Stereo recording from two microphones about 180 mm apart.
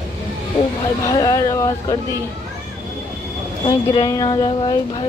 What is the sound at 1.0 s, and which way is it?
Speech, 20° left (ahead or behind).